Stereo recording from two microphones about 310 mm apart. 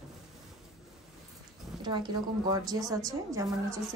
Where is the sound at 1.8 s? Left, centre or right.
Centre.